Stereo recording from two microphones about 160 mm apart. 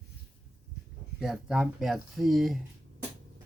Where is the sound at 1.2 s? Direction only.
5° right (ahead or behind).